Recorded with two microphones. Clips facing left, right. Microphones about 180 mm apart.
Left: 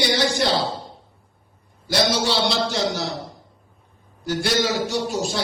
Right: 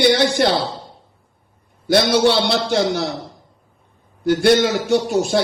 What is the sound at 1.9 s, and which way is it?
A man's voice, 60° right (ahead or behind).